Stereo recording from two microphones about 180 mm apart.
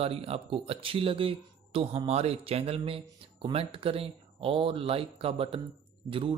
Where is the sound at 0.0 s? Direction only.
35° right (ahead or behind).